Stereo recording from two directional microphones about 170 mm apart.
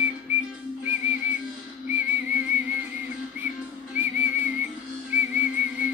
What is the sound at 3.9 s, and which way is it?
Whistle, 15° right (ahead or behind).